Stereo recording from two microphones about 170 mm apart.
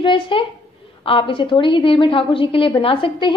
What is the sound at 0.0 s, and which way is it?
A woman's voice, 30° left (ahead or behind).